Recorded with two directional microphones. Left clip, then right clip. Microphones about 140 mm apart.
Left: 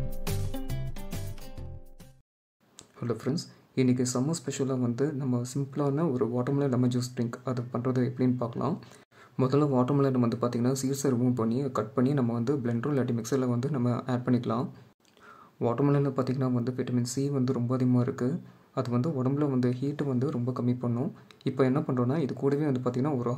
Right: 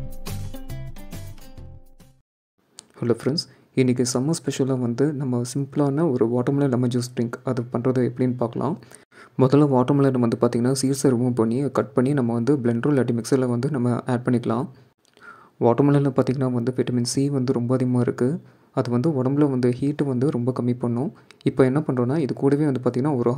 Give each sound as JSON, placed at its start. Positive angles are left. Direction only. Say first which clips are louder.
{"t": 0.1, "sound": "music", "louder": "left 1 dB", "side_deg": 0}
{"t": 3.0, "sound": "speech", "louder": "right 9 dB", "side_deg": -35}
{"t": 15.2, "sound": "a sound", "louder": "right 10 dB", "side_deg": -40}
{"t": 15.9, "sound": "speech", "louder": "right 7 dB", "side_deg": -35}